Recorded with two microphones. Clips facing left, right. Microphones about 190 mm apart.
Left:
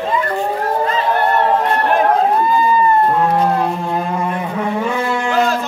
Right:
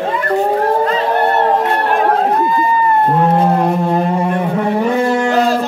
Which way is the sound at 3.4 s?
40° right (ahead or behind).